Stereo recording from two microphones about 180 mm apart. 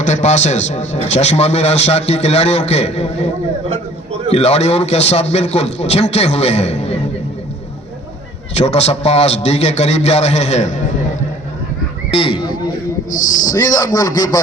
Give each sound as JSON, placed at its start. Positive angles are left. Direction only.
{"t": 0.0, "sound": "a man's voice", "side_deg": 40}
{"t": 4.3, "sound": "a man's voice", "side_deg": 35}
{"t": 8.5, "sound": "a man's voice", "side_deg": 35}
{"t": 12.1, "sound": "a man's voice", "side_deg": 30}
{"t": 13.1, "sound": "speech", "side_deg": 45}
{"t": 13.5, "sound": "a man's voice", "side_deg": 20}